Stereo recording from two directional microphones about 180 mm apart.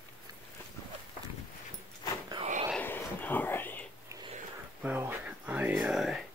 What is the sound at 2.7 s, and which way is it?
Whispering, 10° left (ahead or behind).